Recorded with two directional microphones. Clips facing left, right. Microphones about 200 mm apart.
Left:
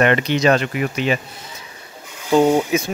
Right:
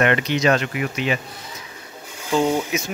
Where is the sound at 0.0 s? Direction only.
35° left (ahead or behind).